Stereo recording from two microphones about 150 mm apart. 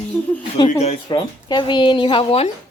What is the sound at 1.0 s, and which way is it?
Speech, 30° left (ahead or behind).